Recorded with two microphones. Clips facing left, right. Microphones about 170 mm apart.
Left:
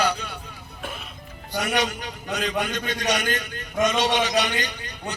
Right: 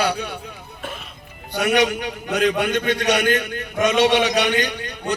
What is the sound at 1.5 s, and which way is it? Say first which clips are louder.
A man's voice: right 6 dB; 65° right (ahead or behind).